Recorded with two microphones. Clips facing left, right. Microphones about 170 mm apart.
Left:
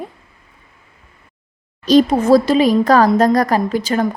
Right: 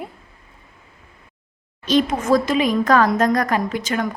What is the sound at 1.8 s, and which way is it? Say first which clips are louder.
A woman's voice: left 7 dB; 35° left (ahead or behind).